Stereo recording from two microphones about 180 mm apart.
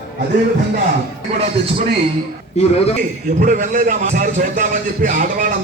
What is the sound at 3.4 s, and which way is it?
A man's voice, 45° right (ahead or behind).